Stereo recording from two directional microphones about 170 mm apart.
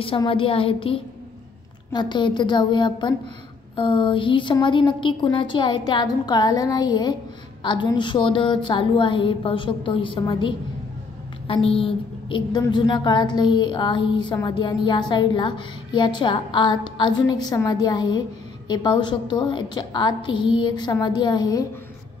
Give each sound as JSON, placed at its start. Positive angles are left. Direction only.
{"t": 0.0, "sound": "a woman's voice", "side_deg": 30}